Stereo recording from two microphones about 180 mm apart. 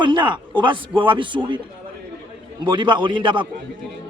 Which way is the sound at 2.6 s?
25° right (ahead or behind).